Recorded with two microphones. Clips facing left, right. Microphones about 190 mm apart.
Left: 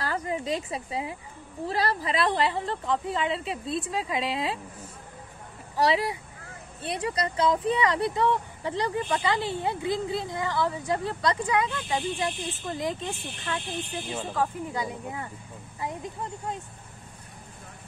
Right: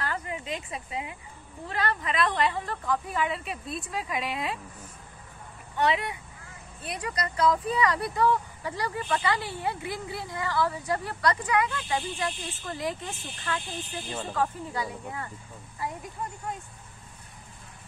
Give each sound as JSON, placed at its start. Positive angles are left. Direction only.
{"t": 0.0, "sound": "speech", "side_deg": 35}
{"t": 5.8, "sound": "speech", "side_deg": 35}